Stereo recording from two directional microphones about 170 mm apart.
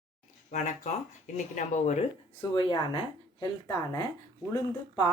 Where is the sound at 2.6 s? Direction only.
30° left (ahead or behind).